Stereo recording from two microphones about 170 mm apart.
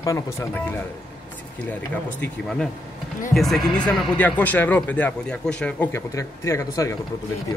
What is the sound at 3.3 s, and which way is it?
Speech, centre (ahead or behind).